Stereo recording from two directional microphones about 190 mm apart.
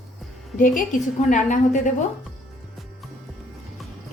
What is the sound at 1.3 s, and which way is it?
Speech, 40° left (ahead or behind).